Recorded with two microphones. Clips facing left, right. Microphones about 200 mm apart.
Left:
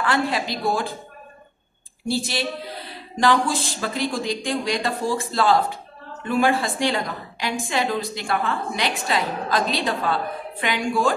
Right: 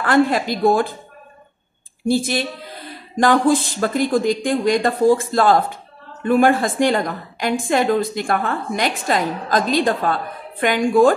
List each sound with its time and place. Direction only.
0.0 s a woman's voice: 50° right (ahead or behind)
2.0 s a woman's voice: 50° right (ahead or behind)